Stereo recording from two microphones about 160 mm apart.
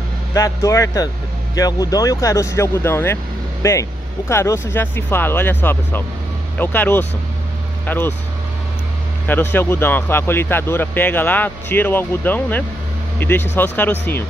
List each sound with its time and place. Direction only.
0.3 s speech: 20° left (ahead or behind)
9.3 s speech: 15° left (ahead or behind)